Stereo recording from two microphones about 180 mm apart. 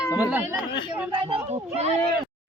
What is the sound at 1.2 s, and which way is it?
Speech, 30° right (ahead or behind).